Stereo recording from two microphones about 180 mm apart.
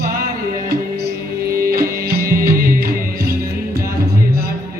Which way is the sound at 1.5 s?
55° right (ahead or behind).